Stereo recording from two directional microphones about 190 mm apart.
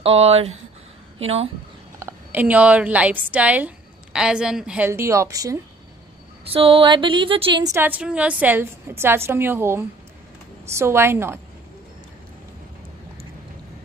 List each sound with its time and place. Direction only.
0.0 s speech: 30° right (ahead or behind)
2.0 s a woman's voice: 10° right (ahead or behind)
6.4 s a sound: 30° right (ahead or behind)
7.7 s a woman's voice: 10° right (ahead or behind)